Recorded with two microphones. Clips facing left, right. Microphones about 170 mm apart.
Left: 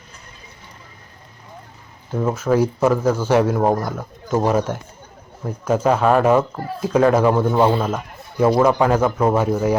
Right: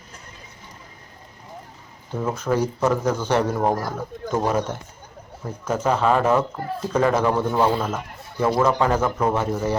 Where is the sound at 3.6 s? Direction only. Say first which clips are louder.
Left 4 dB; 25° left (ahead or behind).